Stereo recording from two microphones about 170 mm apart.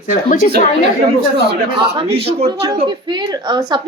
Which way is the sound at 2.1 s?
35° right (ahead or behind).